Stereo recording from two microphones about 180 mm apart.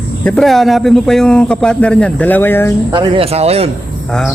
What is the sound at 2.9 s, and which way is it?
Speech, 30° right (ahead or behind).